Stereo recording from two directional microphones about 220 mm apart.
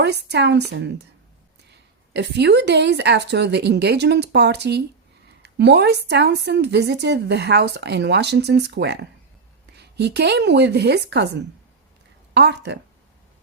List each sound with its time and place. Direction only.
0.0 s speech: 50° right (ahead or behind)
2.1 s speech: 50° right (ahead or behind)
5.4 s a sound: 50° right (ahead or behind)
6.1 s speech: 50° right (ahead or behind)
12.3 s speech: 50° right (ahead or behind)